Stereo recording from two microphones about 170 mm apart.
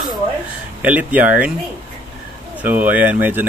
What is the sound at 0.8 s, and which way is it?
Speech, 10° right (ahead or behind).